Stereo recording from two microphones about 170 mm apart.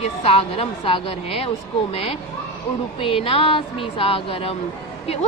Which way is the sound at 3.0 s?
30° left (ahead or behind).